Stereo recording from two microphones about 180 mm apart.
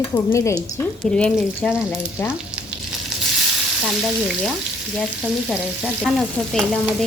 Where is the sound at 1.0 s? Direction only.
5° left (ahead or behind).